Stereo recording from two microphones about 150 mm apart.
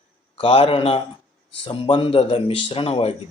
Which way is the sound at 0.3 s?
40° left (ahead or behind).